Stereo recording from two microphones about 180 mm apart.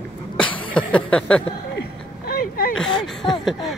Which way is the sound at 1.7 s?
60° left (ahead or behind).